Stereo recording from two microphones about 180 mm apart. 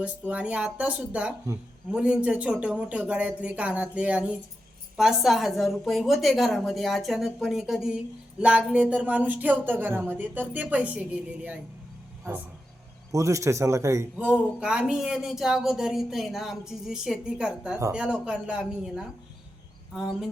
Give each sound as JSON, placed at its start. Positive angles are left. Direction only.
{"t": 0.0, "sound": "a woman's voice", "side_deg": -5}
{"t": 13.1, "sound": "a woman's voice", "side_deg": -15}